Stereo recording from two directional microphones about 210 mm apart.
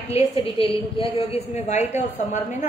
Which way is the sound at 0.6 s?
25° left (ahead or behind).